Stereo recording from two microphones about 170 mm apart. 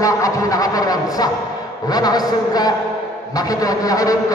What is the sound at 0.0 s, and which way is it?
A man's voice, 20° left (ahead or behind).